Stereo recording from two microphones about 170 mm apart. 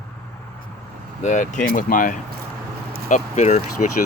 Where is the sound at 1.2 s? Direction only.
45° left (ahead or behind).